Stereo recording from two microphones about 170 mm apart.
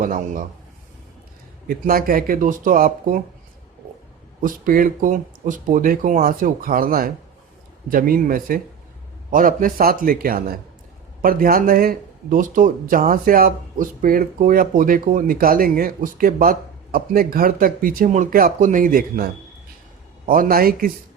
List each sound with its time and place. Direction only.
0.0 s a man's voice: 55° right (ahead or behind)
1.6 s speech: 60° right (ahead or behind)
4.4 s speech: 55° right (ahead or behind)